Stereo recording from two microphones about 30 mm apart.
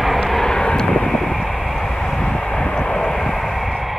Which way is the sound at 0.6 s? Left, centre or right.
Left.